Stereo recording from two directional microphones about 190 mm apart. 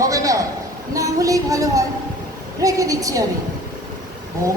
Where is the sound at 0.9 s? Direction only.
15° right (ahead or behind).